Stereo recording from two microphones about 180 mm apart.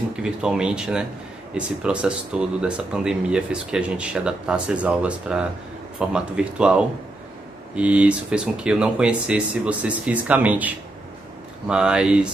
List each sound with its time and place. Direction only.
0.1 s speech: 5° right (ahead or behind)